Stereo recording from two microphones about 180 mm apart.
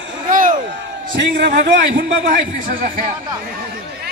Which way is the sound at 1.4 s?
70° right (ahead or behind).